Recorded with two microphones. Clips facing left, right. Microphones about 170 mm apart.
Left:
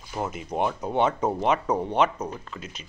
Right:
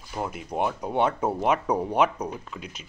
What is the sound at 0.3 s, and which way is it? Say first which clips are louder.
Speech: left 1 dB; 5° right (ahead or behind).